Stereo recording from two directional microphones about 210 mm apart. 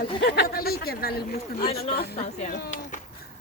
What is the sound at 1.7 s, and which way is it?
Speech, 30° left (ahead or behind).